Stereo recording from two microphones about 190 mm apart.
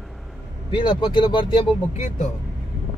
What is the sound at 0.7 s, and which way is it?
Speech, 25° left (ahead or behind).